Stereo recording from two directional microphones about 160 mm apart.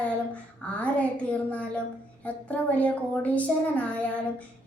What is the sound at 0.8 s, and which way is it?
Speech, 10° left (ahead or behind).